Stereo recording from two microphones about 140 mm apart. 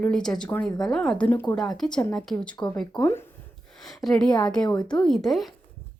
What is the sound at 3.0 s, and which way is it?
Speech, 20° left (ahead or behind).